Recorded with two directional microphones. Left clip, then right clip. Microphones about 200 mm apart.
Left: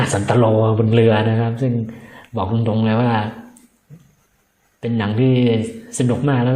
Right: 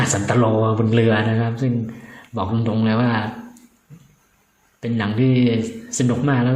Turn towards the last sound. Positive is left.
turn(degrees=5)  # may be behind; listen again after turning